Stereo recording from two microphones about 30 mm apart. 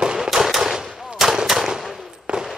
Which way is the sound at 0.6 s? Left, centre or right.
Centre.